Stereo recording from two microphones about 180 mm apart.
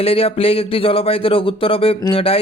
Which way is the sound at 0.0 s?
30° left (ahead or behind).